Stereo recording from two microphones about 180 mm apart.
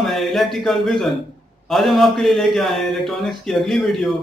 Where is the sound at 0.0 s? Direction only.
Centre (ahead or behind).